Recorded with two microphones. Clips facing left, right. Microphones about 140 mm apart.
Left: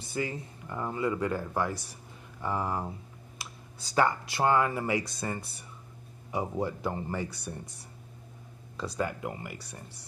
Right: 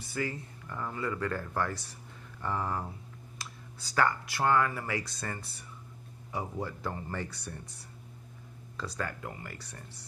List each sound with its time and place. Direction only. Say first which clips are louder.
0.0 s speech: left 2 dB; 20° left (ahead or behind)
8.7 s speech: left 5 dB; 15° left (ahead or behind)